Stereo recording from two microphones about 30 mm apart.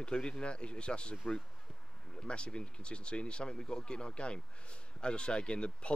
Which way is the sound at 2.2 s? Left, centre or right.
Left.